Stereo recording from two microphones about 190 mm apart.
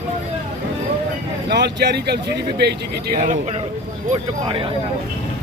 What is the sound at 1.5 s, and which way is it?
Speech, 60° right (ahead or behind).